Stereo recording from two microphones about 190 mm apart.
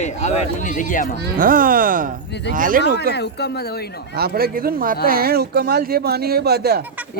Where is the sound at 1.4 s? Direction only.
50° right (ahead or behind).